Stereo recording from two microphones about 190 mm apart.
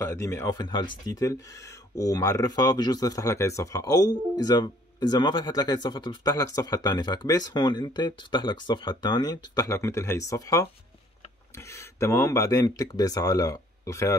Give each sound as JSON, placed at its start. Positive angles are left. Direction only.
{"t": 0.0, "sound": "speech", "side_deg": 15}